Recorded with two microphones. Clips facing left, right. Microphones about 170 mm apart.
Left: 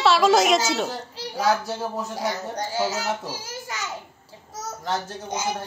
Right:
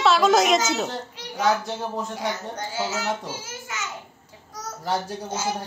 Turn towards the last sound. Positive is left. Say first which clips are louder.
# even
turn(degrees=15)  # may be behind; listen again after turning